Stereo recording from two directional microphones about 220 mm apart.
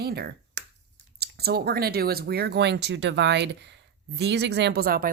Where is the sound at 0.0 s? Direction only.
45° right (ahead or behind).